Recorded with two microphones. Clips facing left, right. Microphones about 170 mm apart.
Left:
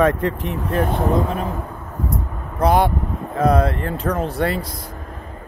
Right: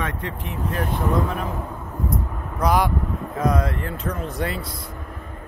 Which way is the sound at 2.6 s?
30° left (ahead or behind).